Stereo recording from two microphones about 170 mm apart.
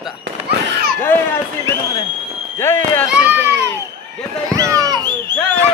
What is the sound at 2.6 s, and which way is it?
Speech, 10° left (ahead or behind).